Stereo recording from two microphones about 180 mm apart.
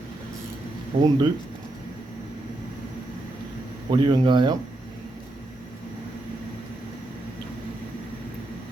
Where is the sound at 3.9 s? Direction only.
25° right (ahead or behind).